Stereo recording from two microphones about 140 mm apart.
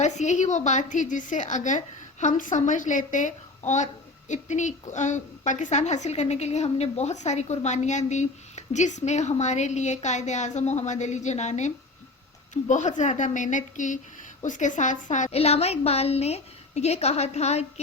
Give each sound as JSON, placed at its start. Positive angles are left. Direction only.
{"t": 0.0, "sound": "a woman's voice", "side_deg": 55}